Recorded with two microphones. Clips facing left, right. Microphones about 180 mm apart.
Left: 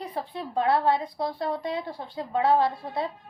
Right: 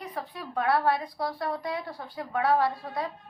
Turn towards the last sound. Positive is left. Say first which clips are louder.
# left 2 dB
turn(degrees=25)  # may be behind; listen again after turning